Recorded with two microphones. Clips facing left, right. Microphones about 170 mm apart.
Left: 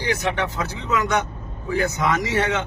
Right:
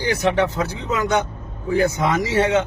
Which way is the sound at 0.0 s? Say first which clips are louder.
Right 5 dB; 35° right (ahead or behind).